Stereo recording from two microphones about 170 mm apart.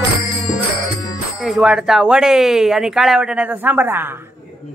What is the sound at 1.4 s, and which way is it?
Speech, 5° right (ahead or behind).